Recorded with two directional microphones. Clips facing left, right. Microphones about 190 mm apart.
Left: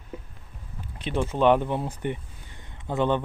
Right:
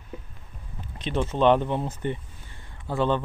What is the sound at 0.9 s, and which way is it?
Speech, 10° left (ahead or behind).